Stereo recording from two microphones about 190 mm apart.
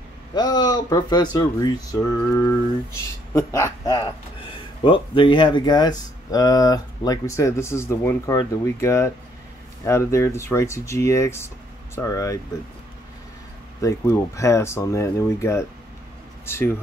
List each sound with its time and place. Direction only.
0.3 s speech: 20° left (ahead or behind)
13.7 s speech: 15° left (ahead or behind)